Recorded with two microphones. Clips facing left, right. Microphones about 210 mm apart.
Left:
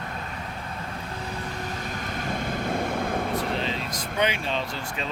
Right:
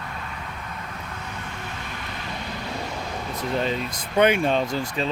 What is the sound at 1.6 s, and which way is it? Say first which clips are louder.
Vehicle: left 3 dB; 40° left (ahead or behind).